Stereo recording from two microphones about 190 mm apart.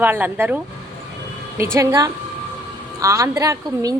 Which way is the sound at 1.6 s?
15° right (ahead or behind).